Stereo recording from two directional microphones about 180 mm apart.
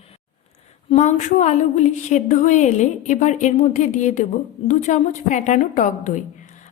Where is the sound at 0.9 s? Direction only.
40° left (ahead or behind).